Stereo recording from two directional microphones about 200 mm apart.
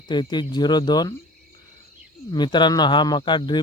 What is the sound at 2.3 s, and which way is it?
Speech, 20° left (ahead or behind).